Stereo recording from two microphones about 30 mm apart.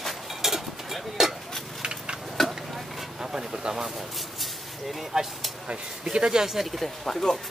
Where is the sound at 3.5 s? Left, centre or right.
Right.